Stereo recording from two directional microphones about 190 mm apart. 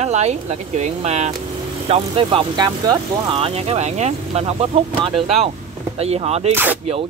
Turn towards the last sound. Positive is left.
turn(degrees=-10)  # may be behind; listen again after turning